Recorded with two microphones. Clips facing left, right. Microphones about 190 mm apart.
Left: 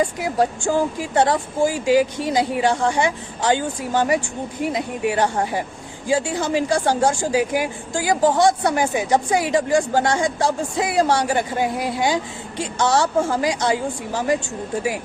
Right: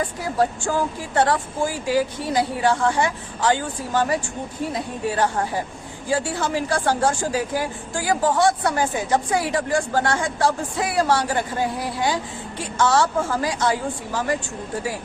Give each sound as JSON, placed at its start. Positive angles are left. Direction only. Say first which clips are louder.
{"t": 0.0, "sound": "a woman's voice", "louder": "left 2 dB", "side_deg": 15}